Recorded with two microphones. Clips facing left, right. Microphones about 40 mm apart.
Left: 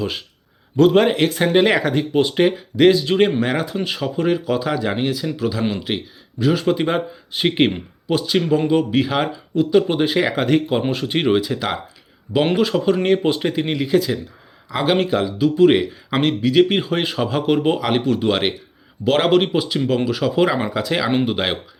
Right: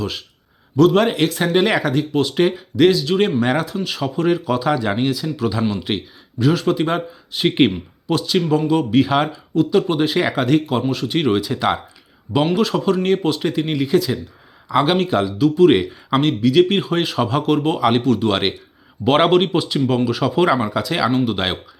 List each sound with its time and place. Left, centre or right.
0.0 s speech: centre
0.9 s speech: centre
3.4 s speech: centre
6.4 s speech: centre
9.6 s speech: centre
17.4 s speech: centre
17.7 s speech: centre
18.0 s speech: centre
18.3 s speech: centre
19.0 s speech: centre
19.3 s speech: centre